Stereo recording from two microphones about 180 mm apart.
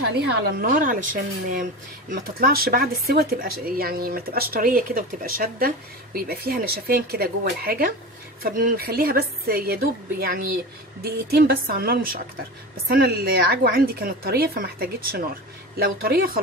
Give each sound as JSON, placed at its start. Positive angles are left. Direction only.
{"t": 0.3, "sound": "speech", "side_deg": -60}